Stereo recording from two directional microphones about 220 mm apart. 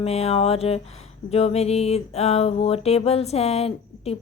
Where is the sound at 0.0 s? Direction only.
30° left (ahead or behind).